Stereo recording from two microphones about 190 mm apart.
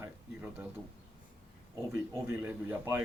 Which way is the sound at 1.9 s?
10° right (ahead or behind).